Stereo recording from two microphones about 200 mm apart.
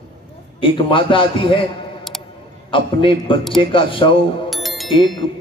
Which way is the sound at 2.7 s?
25° left (ahead or behind).